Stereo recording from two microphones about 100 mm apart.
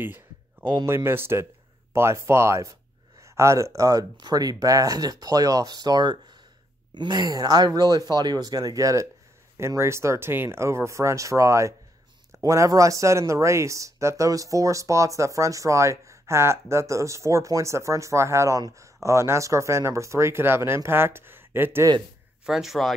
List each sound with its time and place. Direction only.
0.0 s a sound: 20° right (ahead or behind)
0.7 s speech: 25° right (ahead or behind)
22.5 s speech: centre (ahead or behind)